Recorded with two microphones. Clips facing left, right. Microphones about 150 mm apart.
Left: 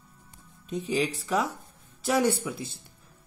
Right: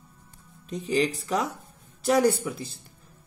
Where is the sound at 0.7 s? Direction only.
Centre (ahead or behind).